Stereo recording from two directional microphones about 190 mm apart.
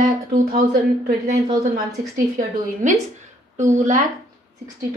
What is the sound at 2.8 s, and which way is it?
A woman's voice, 40° right (ahead or behind).